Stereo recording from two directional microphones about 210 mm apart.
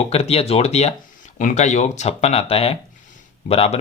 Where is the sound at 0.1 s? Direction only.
30° left (ahead or behind).